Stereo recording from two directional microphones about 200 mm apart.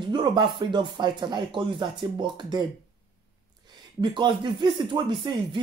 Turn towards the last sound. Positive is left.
turn(degrees=-25)  # may be behind; listen again after turning